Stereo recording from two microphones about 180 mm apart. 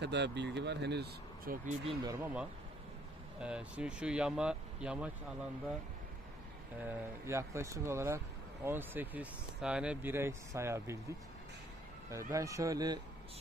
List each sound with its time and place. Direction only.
0.0 s speech: 75° right (ahead or behind)
2.0 s speech: 10° right (ahead or behind)
6.8 s speech: 15° right (ahead or behind)